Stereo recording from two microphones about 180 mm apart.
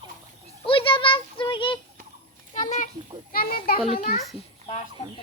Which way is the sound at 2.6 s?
45° left (ahead or behind).